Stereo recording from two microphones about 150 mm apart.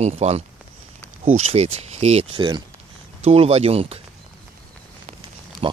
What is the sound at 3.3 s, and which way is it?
Speech, 45° right (ahead or behind).